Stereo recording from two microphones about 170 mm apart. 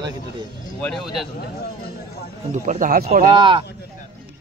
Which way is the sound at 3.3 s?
30° right (ahead or behind).